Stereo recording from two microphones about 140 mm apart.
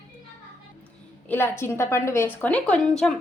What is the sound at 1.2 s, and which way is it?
A woman's voice, 15° left (ahead or behind).